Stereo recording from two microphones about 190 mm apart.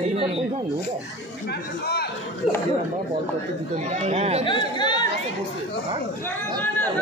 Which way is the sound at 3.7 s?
35° right (ahead or behind).